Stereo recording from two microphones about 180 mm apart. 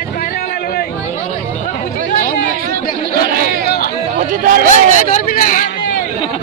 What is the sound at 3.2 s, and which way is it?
Chatter, 60° right (ahead or behind).